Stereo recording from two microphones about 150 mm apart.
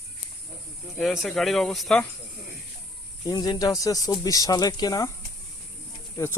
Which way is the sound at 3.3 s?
25° left (ahead or behind).